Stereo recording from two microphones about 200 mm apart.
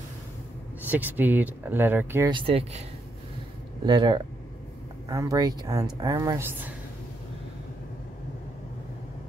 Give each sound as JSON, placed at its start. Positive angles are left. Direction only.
{"t": 0.8, "sound": "speech", "side_deg": -10}
{"t": 2.3, "sound": "speech", "side_deg": -30}
{"t": 3.8, "sound": "speech", "side_deg": -20}